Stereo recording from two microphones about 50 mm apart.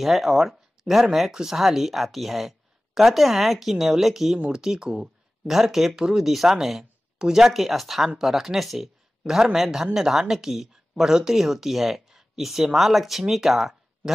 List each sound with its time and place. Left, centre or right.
0.0 s speech: centre